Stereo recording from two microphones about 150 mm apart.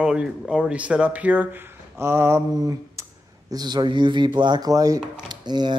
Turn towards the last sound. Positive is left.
turn(degrees=-30)  # may be behind; listen again after turning